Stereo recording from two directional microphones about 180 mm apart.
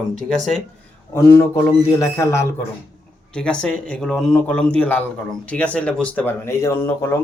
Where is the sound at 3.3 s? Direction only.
5° left (ahead or behind).